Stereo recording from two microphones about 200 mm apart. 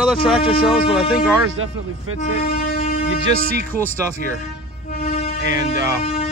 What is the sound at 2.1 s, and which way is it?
Speech, 90° right.